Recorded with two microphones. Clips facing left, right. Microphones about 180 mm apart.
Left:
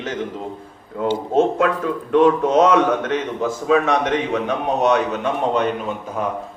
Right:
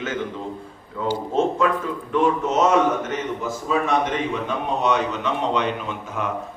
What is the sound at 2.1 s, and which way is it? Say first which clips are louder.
A man's voice: left 6 dB; 60° left (ahead or behind).